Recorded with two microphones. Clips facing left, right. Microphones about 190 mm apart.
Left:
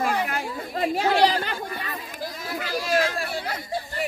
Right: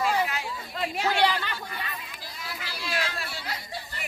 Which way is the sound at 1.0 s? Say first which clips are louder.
Left 4 dB; 35° left (ahead or behind).